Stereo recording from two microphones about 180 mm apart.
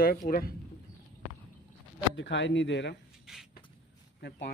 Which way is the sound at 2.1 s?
90° left.